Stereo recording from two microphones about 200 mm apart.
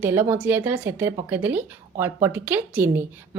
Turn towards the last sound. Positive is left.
turn(degrees=-10)  # may be behind; listen again after turning